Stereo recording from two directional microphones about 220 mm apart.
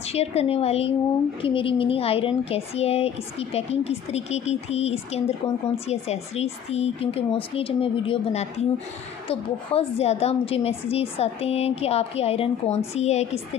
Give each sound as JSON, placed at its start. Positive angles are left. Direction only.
{"t": 0.0, "sound": "a woman's voice", "side_deg": 30}